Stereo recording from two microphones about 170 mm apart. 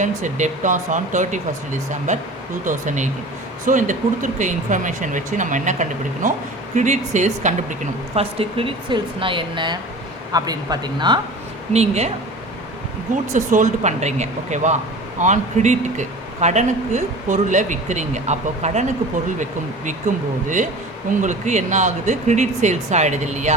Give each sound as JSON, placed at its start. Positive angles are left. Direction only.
{"t": 0.0, "sound": "a man's voice", "side_deg": -45}
{"t": 11.7, "sound": "a woman's voice", "side_deg": -40}
{"t": 13.3, "sound": "a man's voice", "side_deg": -45}
{"t": 21.1, "sound": "a man's voice", "side_deg": -45}